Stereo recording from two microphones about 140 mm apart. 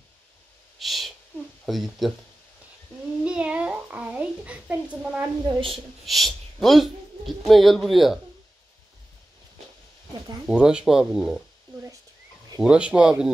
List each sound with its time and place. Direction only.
0.7 s owl: centre (ahead or behind)
1.7 s speech: centre (ahead or behind)
3.3 s a sound: 5° right (ahead or behind)
5.4 s a woman's voice: 40° right (ahead or behind)
6.0 s speech: centre (ahead or behind)
10.4 s speech: 5° right (ahead or behind)
12.6 s speech: 5° right (ahead or behind)